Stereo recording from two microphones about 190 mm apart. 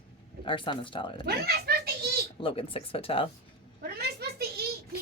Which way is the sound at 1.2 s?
55° right (ahead or behind).